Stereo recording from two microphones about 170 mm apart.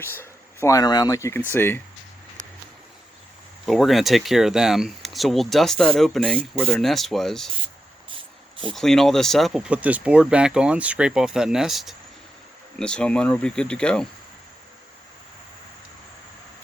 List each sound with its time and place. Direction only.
0.0 s speech: 15° left (ahead or behind)
3.7 s speech: centre (ahead or behind)
8.7 s speech: centre (ahead or behind)